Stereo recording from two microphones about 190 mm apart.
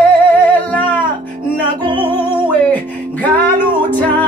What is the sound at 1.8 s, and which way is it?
Music, 25° right (ahead or behind).